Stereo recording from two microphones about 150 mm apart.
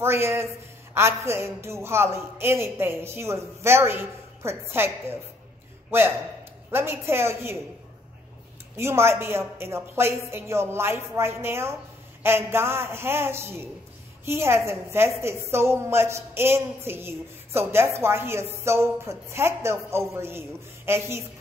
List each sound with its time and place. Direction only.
0.0 s a woman's voice: 15° right (ahead or behind)
8.7 s a woman's voice: 15° right (ahead or behind)